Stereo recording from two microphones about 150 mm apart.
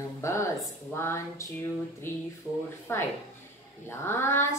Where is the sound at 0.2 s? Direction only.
20° left (ahead or behind).